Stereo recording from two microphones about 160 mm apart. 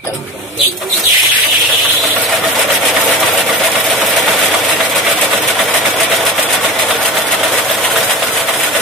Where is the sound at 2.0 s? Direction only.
Centre (ahead or behind).